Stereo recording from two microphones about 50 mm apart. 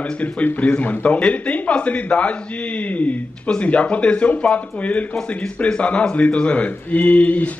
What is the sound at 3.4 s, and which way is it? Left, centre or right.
Speech, left.